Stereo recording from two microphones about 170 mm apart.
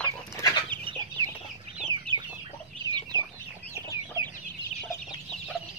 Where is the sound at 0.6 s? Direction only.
25° right (ahead or behind).